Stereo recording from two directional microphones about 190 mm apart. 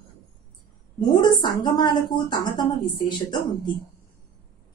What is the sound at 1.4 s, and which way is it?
A woman's voice, 25° left (ahead or behind).